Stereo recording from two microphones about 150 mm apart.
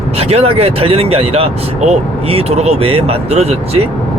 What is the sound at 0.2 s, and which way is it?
Speech, 45° right (ahead or behind).